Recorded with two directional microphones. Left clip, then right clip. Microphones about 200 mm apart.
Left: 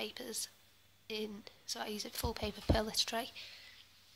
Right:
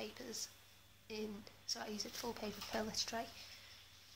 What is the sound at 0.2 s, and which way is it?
Speech, 30° left (ahead or behind).